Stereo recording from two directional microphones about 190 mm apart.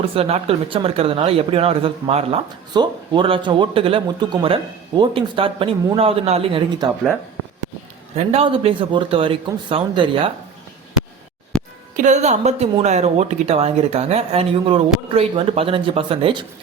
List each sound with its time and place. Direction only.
0.1 s speech: 30° right (ahead or behind)
8.1 s speech: 30° right (ahead or behind)
11.5 s music: 5° left (ahead or behind)
12.0 s a woman's voice: 40° right (ahead or behind)